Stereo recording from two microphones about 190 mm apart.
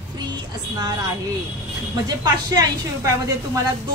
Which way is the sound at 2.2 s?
20° right (ahead or behind).